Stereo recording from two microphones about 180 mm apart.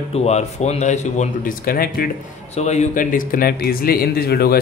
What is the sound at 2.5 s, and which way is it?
A man's voice, 40° left (ahead or behind).